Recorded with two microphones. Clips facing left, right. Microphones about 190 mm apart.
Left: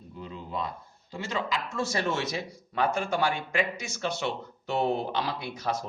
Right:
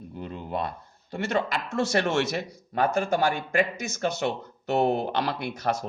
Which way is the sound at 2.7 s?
45° right (ahead or behind).